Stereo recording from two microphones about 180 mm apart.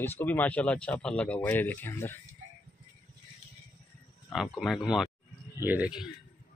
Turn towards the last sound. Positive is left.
turn(degrees=-5)  # may be behind; listen again after turning